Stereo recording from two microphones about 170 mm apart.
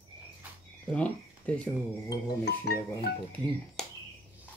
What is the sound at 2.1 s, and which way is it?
Music, 70° left (ahead or behind).